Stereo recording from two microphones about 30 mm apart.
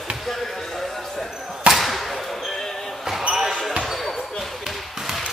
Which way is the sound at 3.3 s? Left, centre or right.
Right.